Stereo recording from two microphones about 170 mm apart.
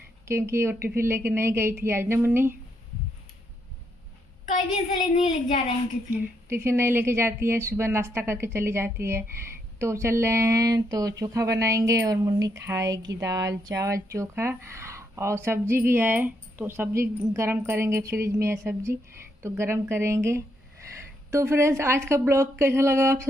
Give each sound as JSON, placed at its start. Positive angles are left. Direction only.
{"t": 0.3, "sound": "a woman's voice", "side_deg": -15}
{"t": 6.0, "sound": "a woman's voice", "side_deg": -15}